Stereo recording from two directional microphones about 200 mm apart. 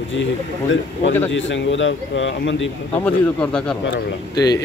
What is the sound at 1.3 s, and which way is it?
Speech, 65° left (ahead or behind).